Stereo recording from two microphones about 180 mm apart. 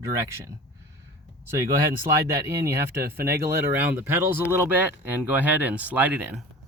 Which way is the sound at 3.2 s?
60° right (ahead or behind).